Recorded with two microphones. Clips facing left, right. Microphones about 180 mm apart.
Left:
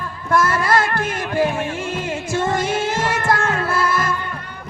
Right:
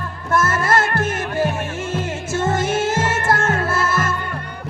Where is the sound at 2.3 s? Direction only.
50° right (ahead or behind).